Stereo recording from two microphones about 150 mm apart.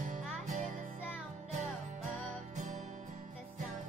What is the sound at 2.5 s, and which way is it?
Music, 55° right (ahead or behind).